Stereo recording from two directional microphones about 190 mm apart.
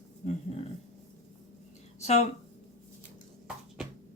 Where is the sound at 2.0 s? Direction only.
35° left (ahead or behind).